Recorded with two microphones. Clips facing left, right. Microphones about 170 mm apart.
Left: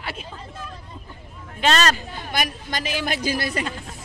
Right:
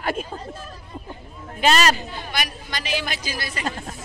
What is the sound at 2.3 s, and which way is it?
A woman's voice, 45° left (ahead or behind).